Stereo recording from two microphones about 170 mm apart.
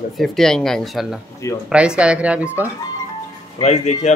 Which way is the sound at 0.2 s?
Centre (ahead or behind).